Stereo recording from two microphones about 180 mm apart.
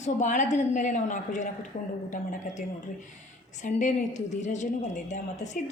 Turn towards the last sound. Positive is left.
turn(degrees=40)  # may be behind; listen again after turning